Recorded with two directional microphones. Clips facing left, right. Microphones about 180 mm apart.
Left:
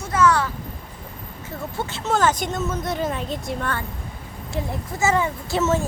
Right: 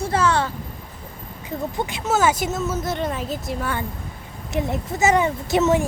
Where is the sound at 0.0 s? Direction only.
30° right (ahead or behind).